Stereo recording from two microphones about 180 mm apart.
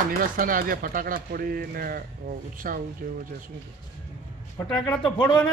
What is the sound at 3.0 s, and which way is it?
Speech, 65° right (ahead or behind).